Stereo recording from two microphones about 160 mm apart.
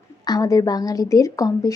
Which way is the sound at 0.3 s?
20° left (ahead or behind).